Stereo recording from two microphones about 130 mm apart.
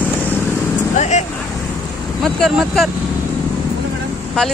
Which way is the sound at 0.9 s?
65° left (ahead or behind).